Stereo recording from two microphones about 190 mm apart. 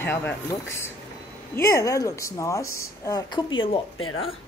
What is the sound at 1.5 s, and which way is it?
A woman's voice, 15° left (ahead or behind).